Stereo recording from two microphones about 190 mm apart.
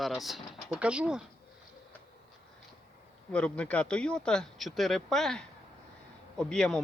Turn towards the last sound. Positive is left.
turn(degrees=5)  # may be behind; listen again after turning